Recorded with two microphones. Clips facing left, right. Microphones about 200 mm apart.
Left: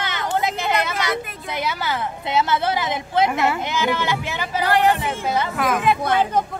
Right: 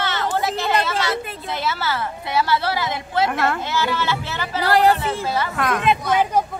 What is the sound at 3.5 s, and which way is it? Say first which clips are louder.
Speech: left 1 dB; 15° left (ahead or behind).